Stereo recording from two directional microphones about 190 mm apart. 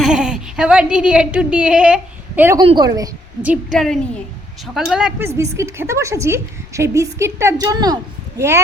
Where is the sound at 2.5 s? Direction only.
25° right (ahead or behind).